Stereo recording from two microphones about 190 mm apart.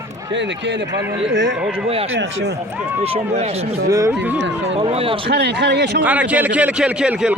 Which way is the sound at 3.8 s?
15° right (ahead or behind).